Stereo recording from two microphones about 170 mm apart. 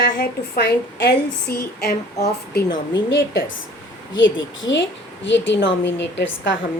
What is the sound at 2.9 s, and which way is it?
A woman's voice, 90° left.